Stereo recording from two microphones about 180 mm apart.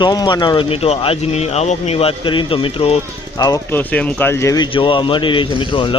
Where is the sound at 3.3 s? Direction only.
20° left (ahead or behind).